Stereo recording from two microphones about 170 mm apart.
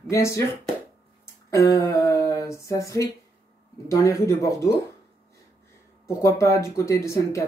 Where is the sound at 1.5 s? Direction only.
20° left (ahead or behind).